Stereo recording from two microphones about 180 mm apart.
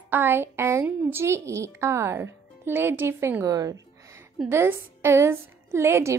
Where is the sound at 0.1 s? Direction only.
10° right (ahead or behind).